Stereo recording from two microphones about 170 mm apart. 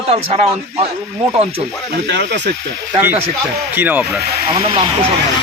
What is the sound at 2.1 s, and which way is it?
Speech, 90° right.